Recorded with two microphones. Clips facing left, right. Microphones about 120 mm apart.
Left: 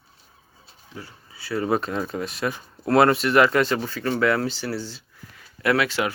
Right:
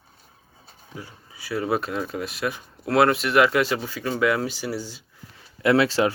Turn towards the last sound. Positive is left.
turn(degrees=-30)  # may be behind; listen again after turning